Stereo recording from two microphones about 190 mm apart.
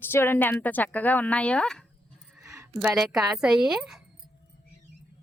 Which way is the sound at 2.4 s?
15° right (ahead or behind).